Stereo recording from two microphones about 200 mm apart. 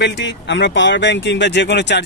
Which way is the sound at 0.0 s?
60° left (ahead or behind).